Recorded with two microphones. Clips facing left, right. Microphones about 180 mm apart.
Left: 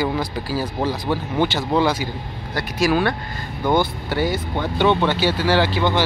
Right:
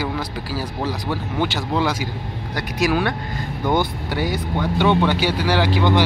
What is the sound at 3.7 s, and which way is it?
Speech, 15° right (ahead or behind).